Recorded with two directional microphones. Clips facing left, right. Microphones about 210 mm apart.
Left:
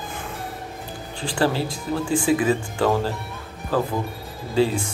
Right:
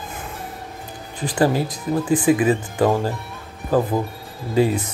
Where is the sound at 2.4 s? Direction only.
15° right (ahead or behind).